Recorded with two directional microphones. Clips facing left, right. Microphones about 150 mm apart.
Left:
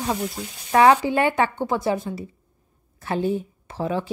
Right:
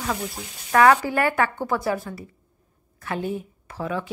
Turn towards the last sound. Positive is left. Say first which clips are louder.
# left 3 dB
turn(degrees=30)  # may be behind; listen again after turning